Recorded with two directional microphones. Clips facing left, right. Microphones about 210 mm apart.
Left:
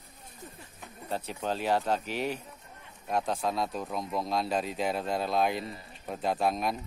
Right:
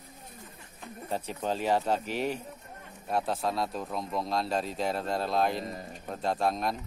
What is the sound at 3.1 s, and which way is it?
Speech, 5° right (ahead or behind).